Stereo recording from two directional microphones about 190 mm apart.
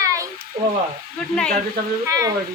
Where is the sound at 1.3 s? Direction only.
5° left (ahead or behind).